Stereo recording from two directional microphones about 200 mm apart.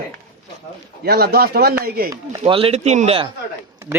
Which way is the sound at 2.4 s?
30° right (ahead or behind).